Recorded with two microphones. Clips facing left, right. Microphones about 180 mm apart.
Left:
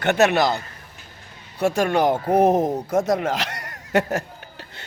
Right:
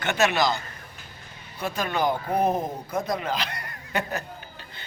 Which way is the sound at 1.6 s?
75° left (ahead or behind).